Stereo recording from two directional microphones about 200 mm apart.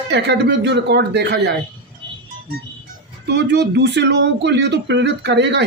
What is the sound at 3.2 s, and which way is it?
Speech, 55° right (ahead or behind).